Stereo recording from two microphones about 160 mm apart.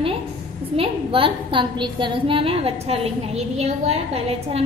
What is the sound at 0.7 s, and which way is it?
A woman's voice, 35° right (ahead or behind).